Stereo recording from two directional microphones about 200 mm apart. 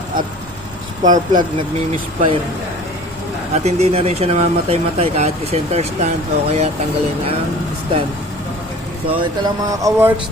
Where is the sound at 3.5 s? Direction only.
35° right (ahead or behind).